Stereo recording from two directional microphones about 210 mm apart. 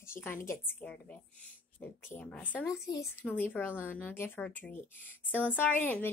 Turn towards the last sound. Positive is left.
turn(degrees=10)  # may be behind; listen again after turning